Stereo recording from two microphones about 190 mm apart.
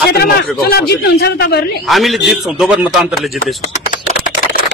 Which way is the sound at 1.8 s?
Centre (ahead or behind).